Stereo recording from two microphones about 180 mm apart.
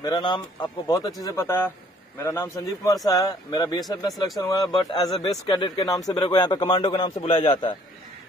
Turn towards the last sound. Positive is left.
turn(degrees=30)  # may be behind; listen again after turning